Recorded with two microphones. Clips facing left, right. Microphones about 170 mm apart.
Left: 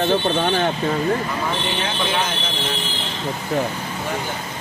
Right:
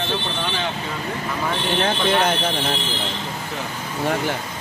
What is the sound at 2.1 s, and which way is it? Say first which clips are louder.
Speech: right 6 dB; 60° right (ahead or behind).